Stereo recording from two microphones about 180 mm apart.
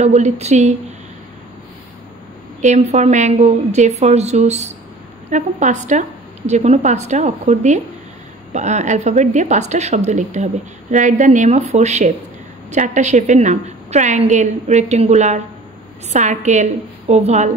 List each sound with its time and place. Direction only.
0.0 s a woman's voice: 40° right (ahead or behind)
2.6 s a woman's voice: 40° right (ahead or behind)